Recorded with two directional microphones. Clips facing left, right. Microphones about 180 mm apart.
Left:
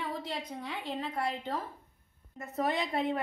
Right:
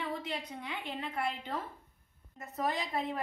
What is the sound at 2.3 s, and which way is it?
Speech, 35° left (ahead or behind).